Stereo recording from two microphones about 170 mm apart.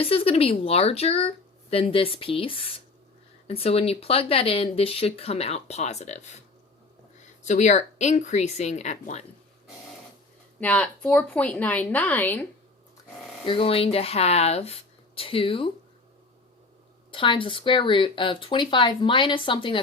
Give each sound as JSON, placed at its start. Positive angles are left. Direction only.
{"t": 0.0, "sound": "speech", "side_deg": 35}
{"t": 7.4, "sound": "speech", "side_deg": 45}
{"t": 10.6, "sound": "a woman's voice", "side_deg": 10}
{"t": 13.4, "sound": "speech", "side_deg": 30}
{"t": 17.1, "sound": "speech", "side_deg": 30}